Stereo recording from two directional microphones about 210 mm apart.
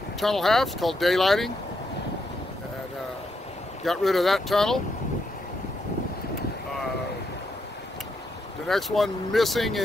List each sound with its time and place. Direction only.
0.2 s speech: centre (ahead or behind)
3.8 s speech: centre (ahead or behind)
8.6 s speech: centre (ahead or behind)